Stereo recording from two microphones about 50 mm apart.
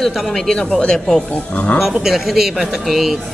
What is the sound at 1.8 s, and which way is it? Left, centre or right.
Speech, centre.